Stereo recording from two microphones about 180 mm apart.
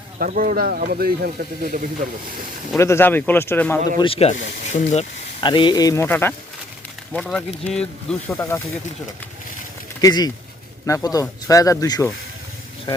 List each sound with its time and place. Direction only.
0.2 s speech: 50° right (ahead or behind)
2.7 s speech: 15° left (ahead or behind)
3.9 s speech: 30° left (ahead or behind)
5.4 s speech: 25° left (ahead or behind)
10.0 s speech: 20° left (ahead or behind)